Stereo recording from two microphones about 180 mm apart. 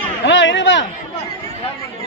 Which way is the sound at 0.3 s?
90° left.